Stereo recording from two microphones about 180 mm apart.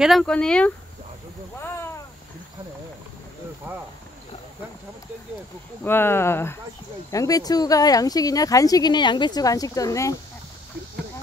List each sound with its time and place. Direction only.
0.0 s speech: centre (ahead or behind)
1.6 s a sound: 15° left (ahead or behind)
5.9 s speech: 10° left (ahead or behind)